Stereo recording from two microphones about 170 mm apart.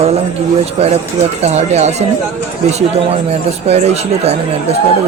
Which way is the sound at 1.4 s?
40° right (ahead or behind).